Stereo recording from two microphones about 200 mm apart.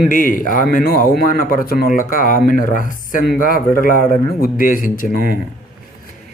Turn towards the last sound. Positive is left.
turn(degrees=45)  # may be behind; listen again after turning